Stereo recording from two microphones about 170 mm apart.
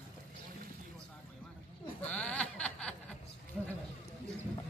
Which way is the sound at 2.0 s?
10° left (ahead or behind).